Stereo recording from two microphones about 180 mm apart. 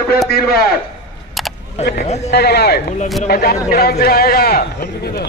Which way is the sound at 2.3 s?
65° left (ahead or behind).